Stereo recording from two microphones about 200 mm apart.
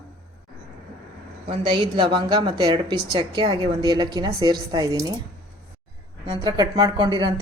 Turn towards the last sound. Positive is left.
turn(degrees=-20)  # may be behind; listen again after turning